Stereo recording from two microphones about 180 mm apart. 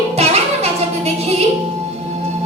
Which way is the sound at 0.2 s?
35° right (ahead or behind).